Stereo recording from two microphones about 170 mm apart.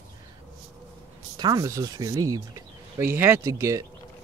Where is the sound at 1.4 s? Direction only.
20° right (ahead or behind).